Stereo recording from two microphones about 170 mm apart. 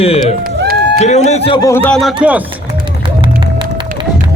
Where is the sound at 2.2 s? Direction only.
5° right (ahead or behind).